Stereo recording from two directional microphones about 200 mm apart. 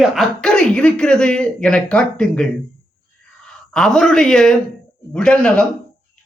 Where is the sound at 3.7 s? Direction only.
5° left (ahead or behind).